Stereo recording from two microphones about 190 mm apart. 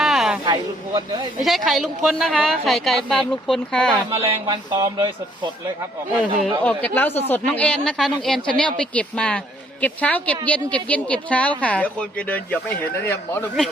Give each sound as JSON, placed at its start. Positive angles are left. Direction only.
{"t": 0.0, "sound": "a sound", "side_deg": 0}
{"t": 0.4, "sound": "speech", "side_deg": -25}
{"t": 1.4, "sound": "a woman's voice", "side_deg": 0}
{"t": 4.3, "sound": "speech", "side_deg": -20}
{"t": 6.6, "sound": "a woman's voice", "side_deg": 10}